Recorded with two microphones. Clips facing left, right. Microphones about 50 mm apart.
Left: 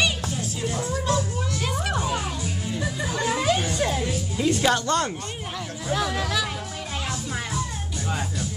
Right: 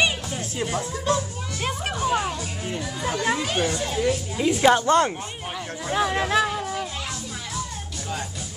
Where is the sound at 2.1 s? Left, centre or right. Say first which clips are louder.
Right 4 dB; right.